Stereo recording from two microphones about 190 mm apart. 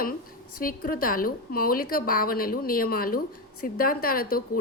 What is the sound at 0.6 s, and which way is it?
A woman's voice, 50° left (ahead or behind).